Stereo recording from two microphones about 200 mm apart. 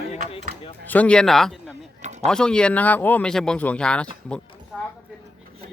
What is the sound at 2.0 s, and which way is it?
Speech, 35° right (ahead or behind).